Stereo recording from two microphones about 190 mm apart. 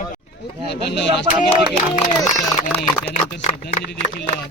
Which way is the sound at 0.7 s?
65° left (ahead or behind).